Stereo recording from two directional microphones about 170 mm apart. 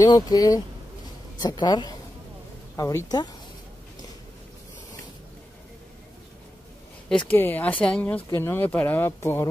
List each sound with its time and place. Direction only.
0.1 s speech: 20° left (ahead or behind)
7.1 s speech: 5° left (ahead or behind)